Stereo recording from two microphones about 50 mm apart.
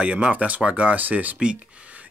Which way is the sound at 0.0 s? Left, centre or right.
Right.